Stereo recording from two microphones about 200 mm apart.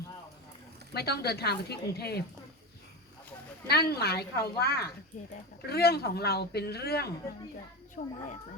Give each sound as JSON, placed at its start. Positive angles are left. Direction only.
{"t": 0.9, "sound": "speech", "side_deg": 55}
{"t": 3.7, "sound": "speech", "side_deg": 50}
{"t": 5.1, "sound": "speech", "side_deg": 40}
{"t": 5.6, "sound": "speech", "side_deg": 50}
{"t": 8.0, "sound": "speech", "side_deg": 40}